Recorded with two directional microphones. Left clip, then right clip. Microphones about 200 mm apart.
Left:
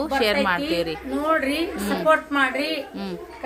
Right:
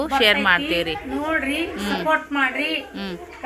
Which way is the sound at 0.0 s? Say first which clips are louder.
Right 3 dB; 5° left (ahead or behind).